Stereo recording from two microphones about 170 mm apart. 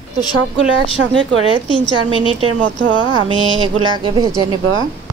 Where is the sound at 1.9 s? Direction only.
30° right (ahead or behind).